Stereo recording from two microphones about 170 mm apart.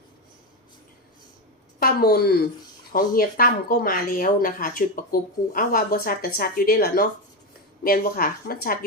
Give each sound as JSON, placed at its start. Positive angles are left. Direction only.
{"t": 1.8, "sound": "a woman's voice", "side_deg": 65}